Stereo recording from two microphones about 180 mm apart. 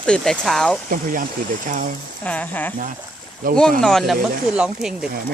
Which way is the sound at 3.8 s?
5° left (ahead or behind).